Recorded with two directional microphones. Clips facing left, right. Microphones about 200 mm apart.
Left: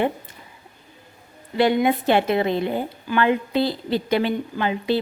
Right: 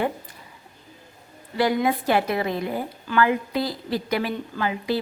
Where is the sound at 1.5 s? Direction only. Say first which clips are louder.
Left 3 dB; 25° left (ahead or behind).